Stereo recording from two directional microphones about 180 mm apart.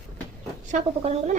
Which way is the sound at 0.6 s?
40° right (ahead or behind).